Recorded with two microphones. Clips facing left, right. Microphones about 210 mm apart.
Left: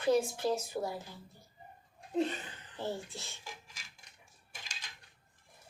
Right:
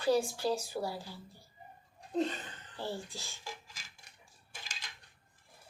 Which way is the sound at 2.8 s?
20° left (ahead or behind).